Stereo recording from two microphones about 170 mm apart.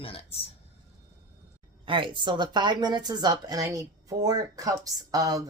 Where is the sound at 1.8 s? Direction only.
30° right (ahead or behind).